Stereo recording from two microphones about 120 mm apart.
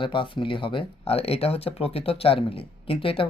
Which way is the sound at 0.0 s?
45° left (ahead or behind).